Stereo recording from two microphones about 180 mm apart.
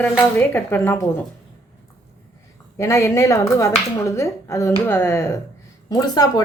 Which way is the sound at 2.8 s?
15° left (ahead or behind).